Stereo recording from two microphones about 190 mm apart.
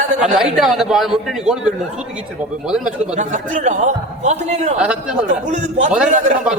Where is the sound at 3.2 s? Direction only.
40° right (ahead or behind).